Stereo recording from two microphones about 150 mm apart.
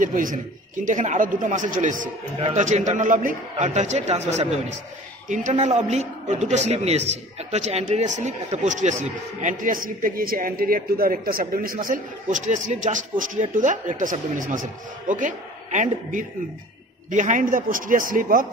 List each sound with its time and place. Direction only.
0.0 s a man's voice: 60° right (ahead or behind)